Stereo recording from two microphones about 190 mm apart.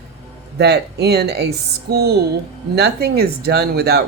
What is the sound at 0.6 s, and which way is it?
Speech, 60° right (ahead or behind).